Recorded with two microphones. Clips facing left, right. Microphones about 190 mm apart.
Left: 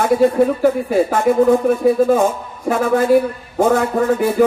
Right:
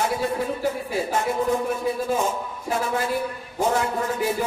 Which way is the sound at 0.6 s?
55° left (ahead or behind).